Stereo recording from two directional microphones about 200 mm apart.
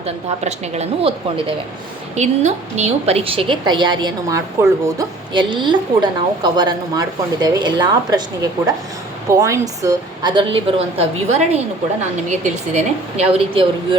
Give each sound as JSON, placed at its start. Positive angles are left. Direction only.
{"t": 0.0, "sound": "a woman's voice", "side_deg": -35}